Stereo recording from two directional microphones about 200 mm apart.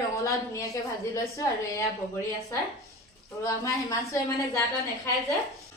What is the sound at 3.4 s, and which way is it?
Speech, 15° left (ahead or behind).